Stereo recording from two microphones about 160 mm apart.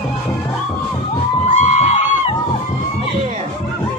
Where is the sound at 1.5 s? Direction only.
50° left (ahead or behind).